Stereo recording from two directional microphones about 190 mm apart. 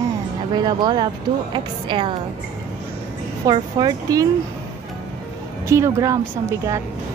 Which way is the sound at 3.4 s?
20° right (ahead or behind).